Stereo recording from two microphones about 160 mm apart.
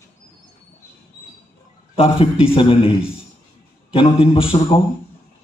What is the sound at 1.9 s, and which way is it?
A man's voice, 35° left (ahead or behind).